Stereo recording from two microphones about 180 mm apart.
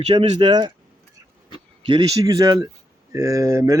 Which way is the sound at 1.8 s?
25° right (ahead or behind).